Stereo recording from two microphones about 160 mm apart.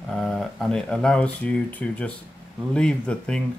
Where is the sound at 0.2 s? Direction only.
Centre (ahead or behind).